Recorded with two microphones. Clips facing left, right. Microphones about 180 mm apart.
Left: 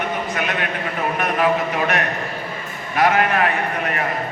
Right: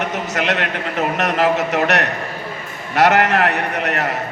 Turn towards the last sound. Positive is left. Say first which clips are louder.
# right 2 dB
turn(degrees=-75)  # may be behind; listen again after turning